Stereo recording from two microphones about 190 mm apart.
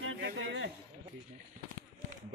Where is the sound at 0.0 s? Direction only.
85° right.